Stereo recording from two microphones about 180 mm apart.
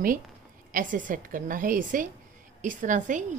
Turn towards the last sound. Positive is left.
turn(degrees=-45)  # may be behind; listen again after turning